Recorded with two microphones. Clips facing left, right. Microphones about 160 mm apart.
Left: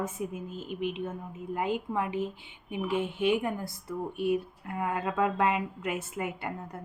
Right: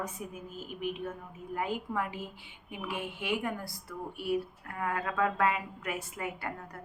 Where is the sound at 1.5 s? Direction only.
20° left (ahead or behind).